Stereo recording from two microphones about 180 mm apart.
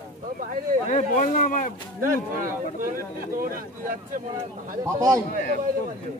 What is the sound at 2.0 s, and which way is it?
Speech, 50° right (ahead or behind).